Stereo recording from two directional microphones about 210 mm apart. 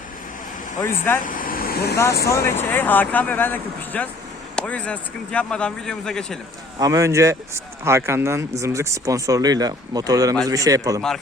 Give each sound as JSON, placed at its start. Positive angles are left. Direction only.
{"t": 0.8, "sound": "speech", "side_deg": 10}
{"t": 1.2, "sound": "vehicle", "side_deg": 40}
{"t": 2.3, "sound": "speech", "side_deg": 10}
{"t": 6.7, "sound": "speech", "side_deg": -15}